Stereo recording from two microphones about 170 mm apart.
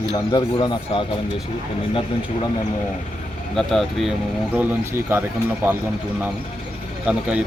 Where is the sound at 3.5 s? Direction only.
Centre (ahead or behind).